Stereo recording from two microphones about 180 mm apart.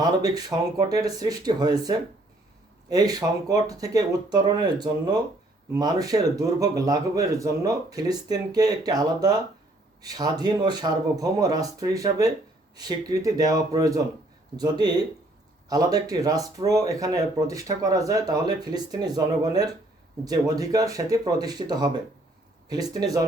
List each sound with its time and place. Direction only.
0.0 s speech: 20° right (ahead or behind)